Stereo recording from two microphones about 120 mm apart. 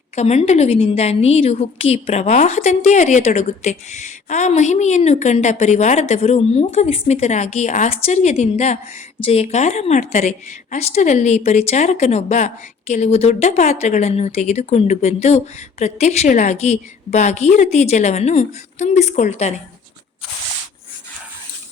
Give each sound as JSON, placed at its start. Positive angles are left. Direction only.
{"t": 0.2, "sound": "a woman's voice", "side_deg": 65}
{"t": 7.9, "sound": "a woman's voice", "side_deg": 65}
{"t": 9.2, "sound": "a woman's voice", "side_deg": 60}